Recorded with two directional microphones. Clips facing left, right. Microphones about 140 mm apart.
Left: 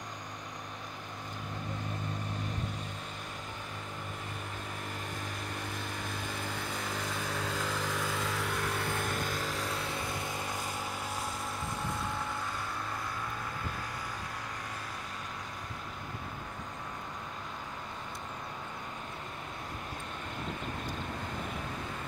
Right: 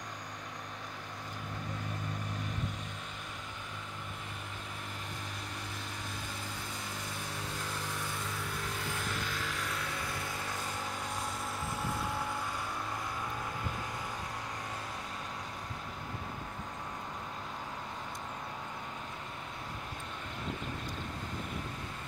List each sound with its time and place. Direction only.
6.3 s vehicle: 60° left (ahead or behind); by 11.2 s 10° left (ahead or behind)